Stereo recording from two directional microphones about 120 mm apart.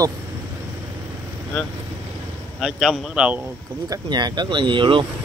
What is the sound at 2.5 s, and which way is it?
Speech, 5° right (ahead or behind).